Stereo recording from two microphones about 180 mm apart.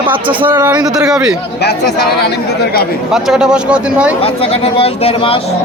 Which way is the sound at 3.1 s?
Centre (ahead or behind).